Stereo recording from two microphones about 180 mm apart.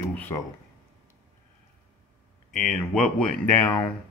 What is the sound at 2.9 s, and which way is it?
Speech, 5° left (ahead or behind).